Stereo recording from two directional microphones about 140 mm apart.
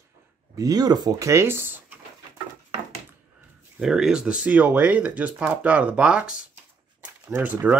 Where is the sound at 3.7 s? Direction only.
5° right (ahead or behind).